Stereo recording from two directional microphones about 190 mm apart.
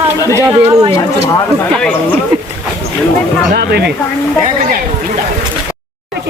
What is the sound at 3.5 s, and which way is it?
Speech, 55° right (ahead or behind).